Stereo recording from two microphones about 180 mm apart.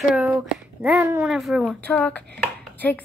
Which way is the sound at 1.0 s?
15° right (ahead or behind).